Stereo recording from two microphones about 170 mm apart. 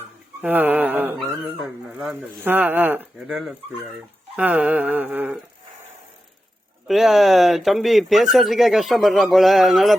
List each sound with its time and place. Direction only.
0.4 s speech: 10° right (ahead or behind)
1.2 s speech: centre (ahead or behind)
3.2 s speech: centre (ahead or behind)
6.8 s speech: centre (ahead or behind)